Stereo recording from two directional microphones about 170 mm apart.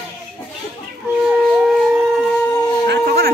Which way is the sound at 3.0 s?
65° right (ahead or behind).